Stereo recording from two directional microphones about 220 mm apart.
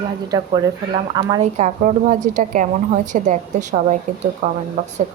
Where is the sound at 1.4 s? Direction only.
30° right (ahead or behind).